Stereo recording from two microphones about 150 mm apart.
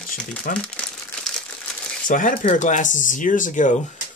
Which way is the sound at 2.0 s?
65° left (ahead or behind).